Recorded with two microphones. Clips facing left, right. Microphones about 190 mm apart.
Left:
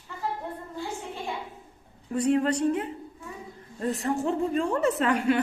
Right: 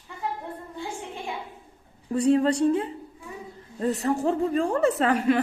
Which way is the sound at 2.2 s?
30° right (ahead or behind).